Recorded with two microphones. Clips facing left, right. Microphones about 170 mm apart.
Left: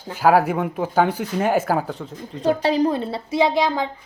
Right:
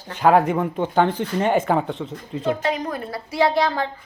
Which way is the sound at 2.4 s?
35° left (ahead or behind).